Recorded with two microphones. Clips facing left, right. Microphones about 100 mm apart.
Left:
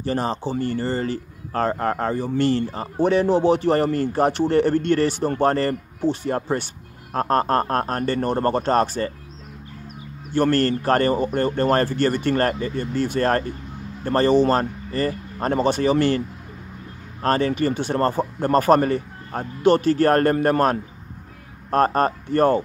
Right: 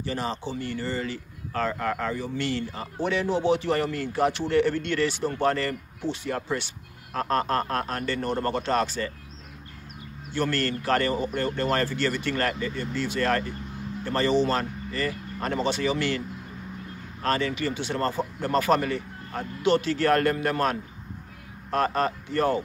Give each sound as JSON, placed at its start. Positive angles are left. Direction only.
{"t": 0.0, "sound": "a man's voice", "side_deg": 45}
{"t": 10.3, "sound": "a man's voice", "side_deg": 45}
{"t": 17.2, "sound": "a man's voice", "side_deg": 40}